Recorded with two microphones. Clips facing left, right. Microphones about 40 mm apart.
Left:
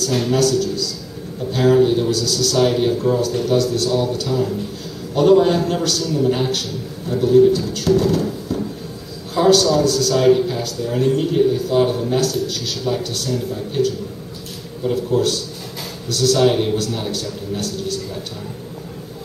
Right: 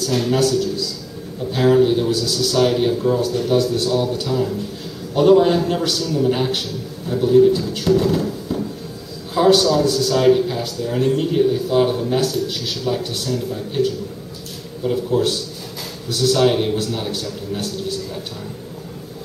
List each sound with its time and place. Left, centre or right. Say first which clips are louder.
0.3 s a man's voice: left 1 dB; centre
2.0 s a man's voice: even; centre
2.5 s a man's voice: even; centre
3.5 s a man's voice: even; centre
3.9 s a man's voice: even; centre
10.1 s a man's voice: even; centre
13.3 s a man's voice: left 1 dB; centre